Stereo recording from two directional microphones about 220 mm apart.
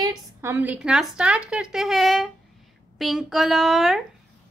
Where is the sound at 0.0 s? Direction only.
15° right (ahead or behind).